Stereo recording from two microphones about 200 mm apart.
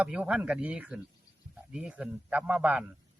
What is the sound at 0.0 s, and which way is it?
A man's voice, 5° right (ahead or behind).